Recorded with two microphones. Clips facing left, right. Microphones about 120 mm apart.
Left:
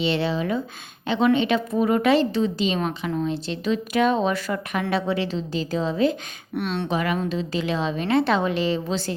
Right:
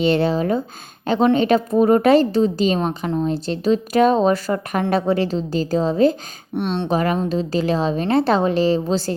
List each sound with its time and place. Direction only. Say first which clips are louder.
0.0 s a woman's voice: right 6 dB; 45° right (ahead or behind)
6.6 s a woman's voice: right 5 dB; 30° right (ahead or behind)